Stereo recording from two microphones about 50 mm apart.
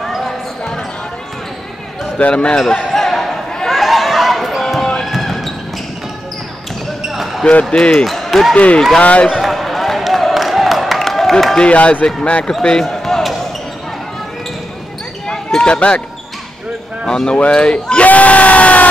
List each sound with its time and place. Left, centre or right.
0.0 s basketball bounce: centre
2.1 s speech: left
2.9 s a sound: centre
4.5 s basketball bounce: centre
7.0 s basketball bounce: centre
7.7 s speech: centre
8.0 s speech: centre
9.0 s speech: left
9.4 s a sound: centre
11.7 s speech: left
12.6 s basketball bounce: centre
15.2 s basketball bounce: centre
17.0 s speech: centre
18.0 s crowd: left